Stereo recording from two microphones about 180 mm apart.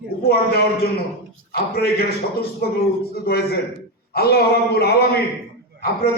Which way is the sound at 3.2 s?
60° left (ahead or behind).